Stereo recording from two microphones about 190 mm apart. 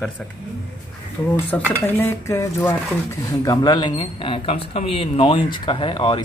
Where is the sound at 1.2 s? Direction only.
15° left (ahead or behind).